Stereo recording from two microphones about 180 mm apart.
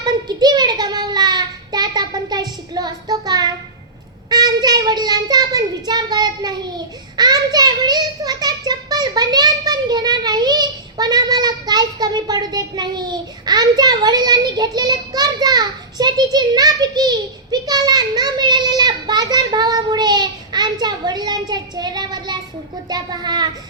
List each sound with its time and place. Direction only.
0.0 s child singing: 20° right (ahead or behind)
4.3 s a child's voice: 20° right (ahead or behind)